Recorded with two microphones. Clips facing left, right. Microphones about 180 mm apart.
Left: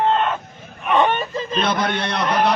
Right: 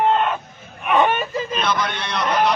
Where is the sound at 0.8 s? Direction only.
Centre (ahead or behind).